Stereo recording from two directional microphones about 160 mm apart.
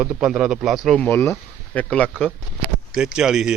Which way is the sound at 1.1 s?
15° left (ahead or behind).